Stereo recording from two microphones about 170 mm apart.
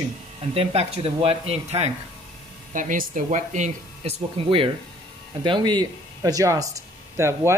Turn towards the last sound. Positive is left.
turn(degrees=-15)  # may be behind; listen again after turning